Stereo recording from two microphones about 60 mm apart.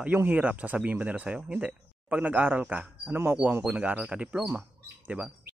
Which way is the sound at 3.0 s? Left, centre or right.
Right.